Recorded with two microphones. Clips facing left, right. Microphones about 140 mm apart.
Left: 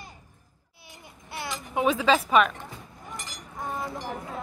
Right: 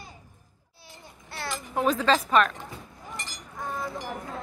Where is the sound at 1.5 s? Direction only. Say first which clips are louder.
Left 1 dB; 5° left (ahead or behind).